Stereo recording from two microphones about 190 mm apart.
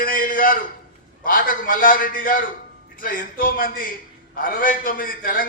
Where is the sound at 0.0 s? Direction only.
45° left (ahead or behind).